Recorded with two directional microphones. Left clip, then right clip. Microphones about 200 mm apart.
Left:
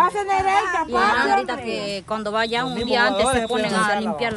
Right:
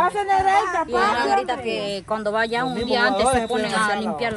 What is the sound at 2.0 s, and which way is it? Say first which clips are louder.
Speech: right 1 dB; centre (ahead or behind).